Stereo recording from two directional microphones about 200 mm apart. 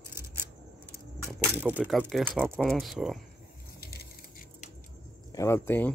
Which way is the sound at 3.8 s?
50° left (ahead or behind).